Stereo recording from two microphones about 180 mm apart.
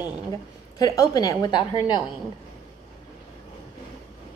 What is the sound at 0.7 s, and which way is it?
A woman's voice, 20° left (ahead or behind).